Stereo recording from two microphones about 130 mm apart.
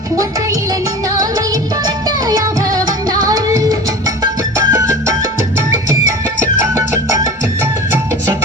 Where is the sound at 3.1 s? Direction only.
25° right (ahead or behind).